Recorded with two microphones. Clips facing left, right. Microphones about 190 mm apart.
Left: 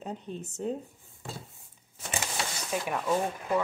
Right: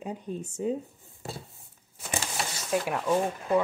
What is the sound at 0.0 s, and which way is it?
Speech, 10° right (ahead or behind).